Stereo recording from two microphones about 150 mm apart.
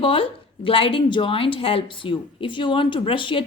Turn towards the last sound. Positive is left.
turn(degrees=35)  # may be behind; listen again after turning